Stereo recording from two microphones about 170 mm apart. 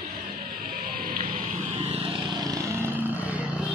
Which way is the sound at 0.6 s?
55° right (ahead or behind).